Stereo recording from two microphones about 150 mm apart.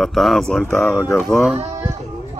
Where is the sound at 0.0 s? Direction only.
Centre (ahead or behind).